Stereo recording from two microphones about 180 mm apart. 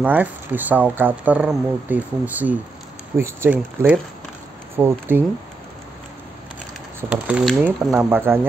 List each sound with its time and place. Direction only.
0.0 s speech: 10° right (ahead or behind)
7.0 s speech: 5° right (ahead or behind)